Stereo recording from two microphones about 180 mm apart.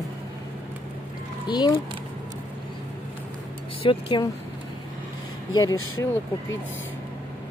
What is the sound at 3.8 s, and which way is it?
Speech, 25° left (ahead or behind).